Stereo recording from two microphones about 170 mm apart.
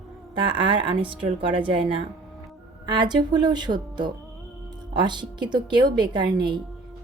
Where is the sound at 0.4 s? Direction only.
30° right (ahead or behind).